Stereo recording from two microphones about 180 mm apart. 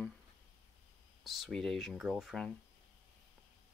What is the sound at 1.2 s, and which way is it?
Speech, centre (ahead or behind).